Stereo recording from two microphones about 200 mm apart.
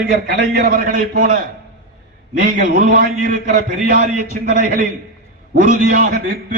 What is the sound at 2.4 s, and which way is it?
A man's voice, 45° right (ahead or behind).